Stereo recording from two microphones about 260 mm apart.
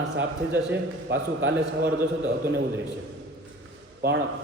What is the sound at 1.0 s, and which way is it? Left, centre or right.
A man's voice, right.